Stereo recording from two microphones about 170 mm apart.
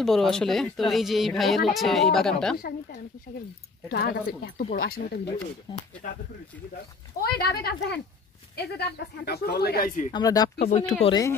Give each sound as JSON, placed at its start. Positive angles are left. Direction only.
{"t": 0.0, "sound": "speech", "side_deg": 0}
{"t": 3.9, "sound": "speech", "side_deg": 65}
{"t": 6.0, "sound": "speech", "side_deg": 50}
{"t": 7.2, "sound": "speech", "side_deg": 65}
{"t": 10.1, "sound": "speech", "side_deg": 25}
{"t": 10.6, "sound": "speech", "side_deg": 40}
{"t": 11.1, "sound": "speech", "side_deg": 20}